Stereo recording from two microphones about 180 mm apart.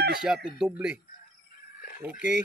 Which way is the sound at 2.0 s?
10° right (ahead or behind).